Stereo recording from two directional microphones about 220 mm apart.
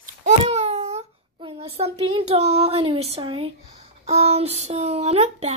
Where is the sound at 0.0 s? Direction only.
30° right (ahead or behind).